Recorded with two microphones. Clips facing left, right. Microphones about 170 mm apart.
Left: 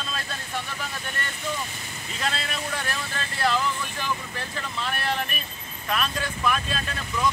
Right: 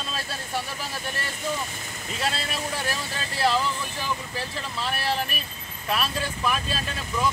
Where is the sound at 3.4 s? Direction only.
30° right (ahead or behind).